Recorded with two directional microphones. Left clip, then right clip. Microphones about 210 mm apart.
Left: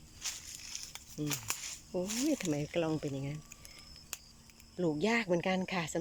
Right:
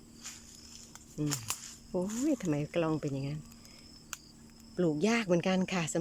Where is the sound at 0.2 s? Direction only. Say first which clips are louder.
Left 7 dB; 15° left (ahead or behind).